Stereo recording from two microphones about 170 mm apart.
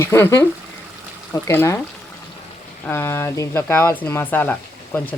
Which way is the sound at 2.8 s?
15° left (ahead or behind).